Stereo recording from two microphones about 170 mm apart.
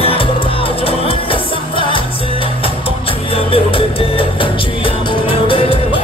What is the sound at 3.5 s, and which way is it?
Music, 30° left (ahead or behind).